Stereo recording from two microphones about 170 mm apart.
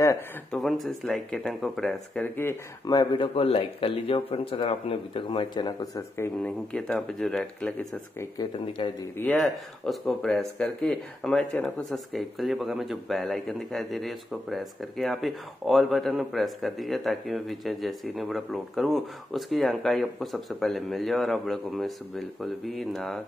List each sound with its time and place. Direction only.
0.5 s speech: centre (ahead or behind)
8.2 s speech: 25° left (ahead or behind)
9.1 s speech: 10° left (ahead or behind)